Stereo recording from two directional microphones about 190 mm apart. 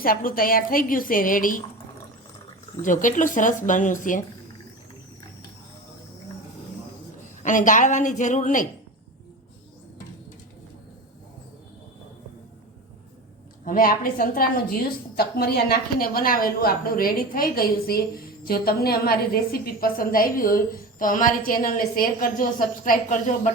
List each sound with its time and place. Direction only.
0.0 s a woman's voice: 50° left (ahead or behind)
2.8 s a woman's voice: 45° left (ahead or behind)
7.4 s a woman's voice: 45° left (ahead or behind)
13.7 s a woman's voice: 50° left (ahead or behind)